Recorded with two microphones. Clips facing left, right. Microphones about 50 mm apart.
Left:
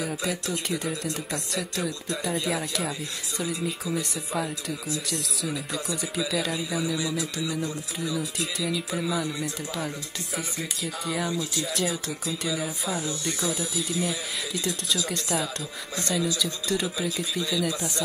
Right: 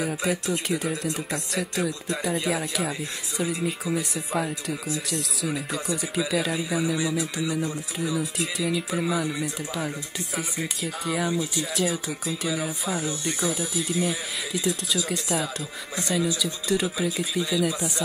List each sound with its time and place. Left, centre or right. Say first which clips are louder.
0.0 s speech: right 3 dB; centre
0.7 s speech: right 2 dB; centre
1.0 s speech: right 2 dB; centre
8.2 s speech: right 2 dB; centre
11.2 s speech: right 2 dB; right
11.6 s speech: right 2 dB; centre
13.0 s speech: right 2 dB; right
13.5 s speech: right 2 dB; centre
17.4 s speech: right 3 dB; centre